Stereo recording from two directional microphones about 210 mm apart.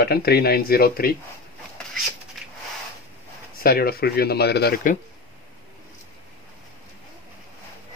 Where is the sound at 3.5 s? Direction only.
45° left (ahead or behind).